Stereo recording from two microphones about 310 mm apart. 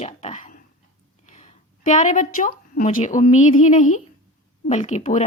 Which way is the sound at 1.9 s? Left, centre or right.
Left.